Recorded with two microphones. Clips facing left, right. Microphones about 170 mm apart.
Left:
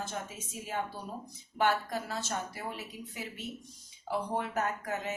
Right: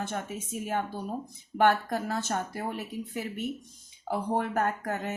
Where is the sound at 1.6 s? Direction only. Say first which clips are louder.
Right 5 dB; 55° right (ahead or behind).